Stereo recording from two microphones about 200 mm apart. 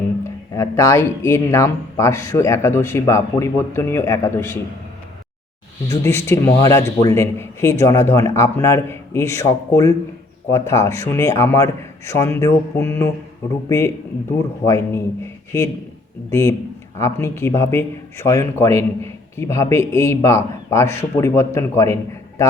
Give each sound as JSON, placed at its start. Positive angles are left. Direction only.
{"t": 0.3, "sound": "a man's voice", "side_deg": 15}
{"t": 5.9, "sound": "a man's voice", "side_deg": 15}
{"t": 16.3, "sound": "a man's voice", "side_deg": 15}